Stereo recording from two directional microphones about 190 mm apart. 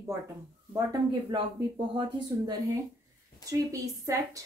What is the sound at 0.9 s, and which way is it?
A woman's voice, 20° right (ahead or behind).